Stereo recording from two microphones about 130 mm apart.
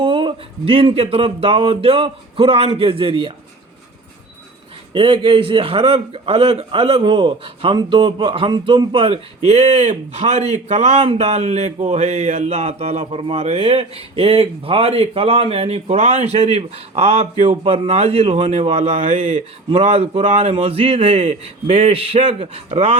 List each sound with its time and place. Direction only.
0.0 s speech: 40° right (ahead or behind)
4.9 s speech: 40° right (ahead or behind)